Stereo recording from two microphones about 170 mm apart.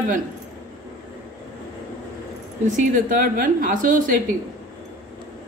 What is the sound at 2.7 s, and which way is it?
Speech, 55° right (ahead or behind).